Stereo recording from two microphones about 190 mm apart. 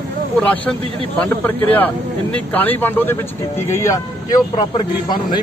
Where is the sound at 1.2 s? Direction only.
10° left (ahead or behind); by 5.4 s 25° left (ahead or behind).